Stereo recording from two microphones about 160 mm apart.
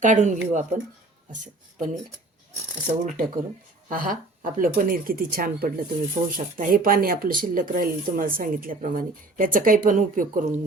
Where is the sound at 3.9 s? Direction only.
60° right (ahead or behind).